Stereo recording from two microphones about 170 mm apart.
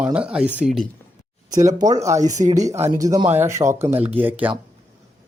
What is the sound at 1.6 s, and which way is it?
Speech, 20° right (ahead or behind).